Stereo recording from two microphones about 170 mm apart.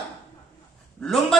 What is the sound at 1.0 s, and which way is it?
Speech, centre (ahead or behind).